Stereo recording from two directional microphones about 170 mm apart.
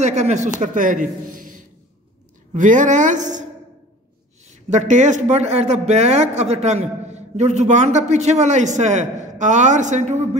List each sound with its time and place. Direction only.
0.0 s a man's voice: 40° right (ahead or behind)
4.5 s speech: 45° right (ahead or behind)